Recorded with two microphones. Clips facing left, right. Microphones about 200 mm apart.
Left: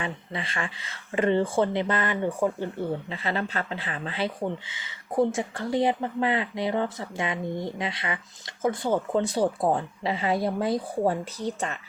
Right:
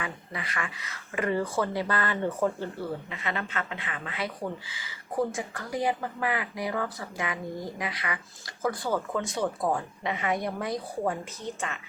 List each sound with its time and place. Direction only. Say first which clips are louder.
0.0 s speech: left 3 dB; 25° left (ahead or behind)
3.1 s speech: left 4 dB; 30° left (ahead or behind)
9.2 s speech: left 5 dB; 35° left (ahead or behind)